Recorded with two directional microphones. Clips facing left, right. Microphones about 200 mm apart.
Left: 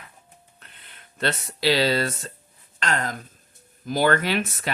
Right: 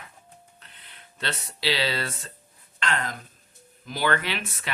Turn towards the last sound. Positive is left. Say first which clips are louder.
# left 7 dB
turn(degrees=40)  # may be behind; listen again after turning